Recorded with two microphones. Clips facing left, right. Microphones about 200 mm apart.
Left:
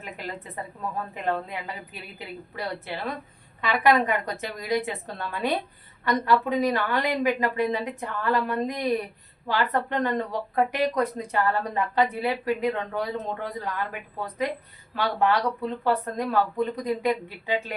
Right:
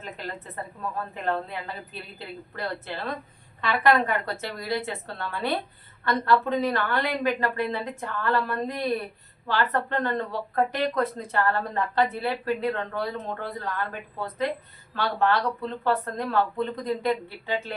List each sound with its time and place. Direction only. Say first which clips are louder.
0.0 s speech: even; 10° left (ahead or behind)
14.9 s speech: left 1 dB; 15° left (ahead or behind)